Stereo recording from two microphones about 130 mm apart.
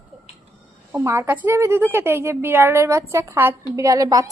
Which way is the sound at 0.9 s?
20° right (ahead or behind).